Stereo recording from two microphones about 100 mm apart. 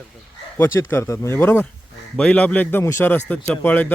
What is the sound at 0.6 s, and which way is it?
Speech, 25° left (ahead or behind).